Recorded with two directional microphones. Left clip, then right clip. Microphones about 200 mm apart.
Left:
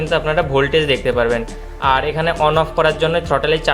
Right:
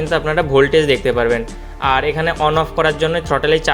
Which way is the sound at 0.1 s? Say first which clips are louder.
Right 1 dB; 15° right (ahead or behind).